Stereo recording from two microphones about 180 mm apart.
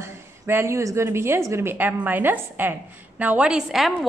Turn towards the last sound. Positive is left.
turn(degrees=-5)  # may be behind; listen again after turning